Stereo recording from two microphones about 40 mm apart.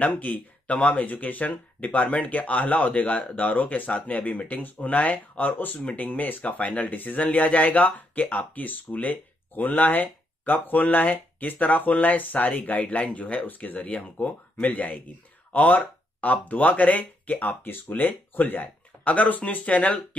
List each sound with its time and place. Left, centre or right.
0.0 s speech: left
6.6 s speech: left
13.8 s speech: left
15.5 s speech: left